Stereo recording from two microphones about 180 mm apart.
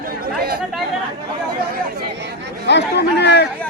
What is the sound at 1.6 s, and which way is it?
Speech, 60° right (ahead or behind).